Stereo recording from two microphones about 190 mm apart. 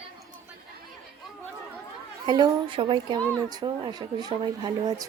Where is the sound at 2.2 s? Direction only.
25° right (ahead or behind).